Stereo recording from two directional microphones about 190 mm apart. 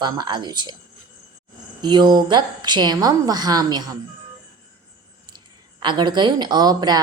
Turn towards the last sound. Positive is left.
turn(degrees=-20)  # may be behind; listen again after turning